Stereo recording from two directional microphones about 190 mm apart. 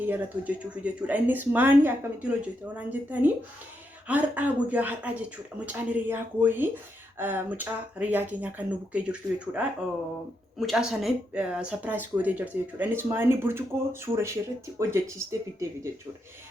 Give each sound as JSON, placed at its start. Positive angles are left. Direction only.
{"t": 0.0, "sound": "speech", "side_deg": -10}
{"t": 10.7, "sound": "speech", "side_deg": 0}